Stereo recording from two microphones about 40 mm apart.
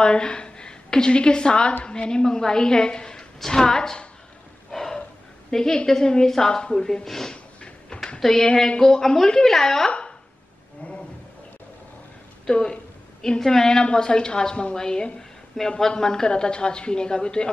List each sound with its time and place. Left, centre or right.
0.0 s a woman's voice: left
4.6 s a sound: centre
5.5 s a woman's voice: centre
7.6 s a sound: left
8.2 s a woman's voice: centre
12.4 s a woman's voice: centre
15.6 s a woman's voice: centre
16.0 s a woman's voice: centre